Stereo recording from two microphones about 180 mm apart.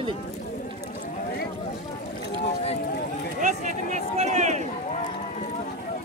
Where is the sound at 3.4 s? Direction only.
40° right (ahead or behind).